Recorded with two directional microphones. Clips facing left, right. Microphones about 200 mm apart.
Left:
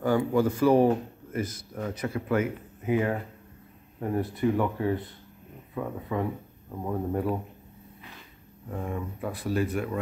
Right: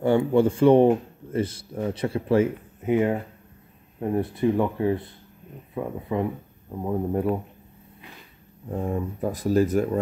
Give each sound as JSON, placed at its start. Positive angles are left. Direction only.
{"t": 0.0, "sound": "speech", "side_deg": -25}
{"t": 8.6, "sound": "speech", "side_deg": -30}